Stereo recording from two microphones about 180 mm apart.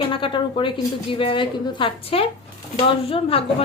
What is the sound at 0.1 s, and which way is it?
A woman's voice, 30° left (ahead or behind).